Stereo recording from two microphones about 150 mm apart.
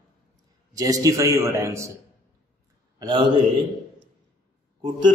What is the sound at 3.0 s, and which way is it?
Speech, 30° right (ahead or behind).